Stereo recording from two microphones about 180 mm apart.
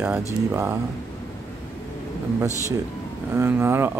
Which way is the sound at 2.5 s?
15° left (ahead or behind).